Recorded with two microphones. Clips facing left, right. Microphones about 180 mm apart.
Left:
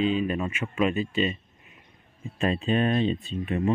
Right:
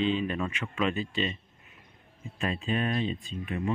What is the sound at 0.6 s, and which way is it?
Speech, 20° left (ahead or behind).